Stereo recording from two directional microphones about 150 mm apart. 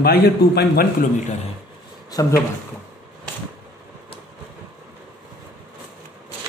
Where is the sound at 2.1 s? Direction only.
25° left (ahead or behind).